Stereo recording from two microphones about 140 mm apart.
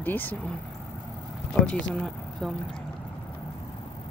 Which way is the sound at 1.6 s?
5° left (ahead or behind).